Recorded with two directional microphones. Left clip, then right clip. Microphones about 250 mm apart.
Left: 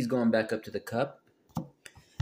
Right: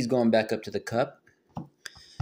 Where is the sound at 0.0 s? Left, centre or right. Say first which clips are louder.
Right 4 dB; right.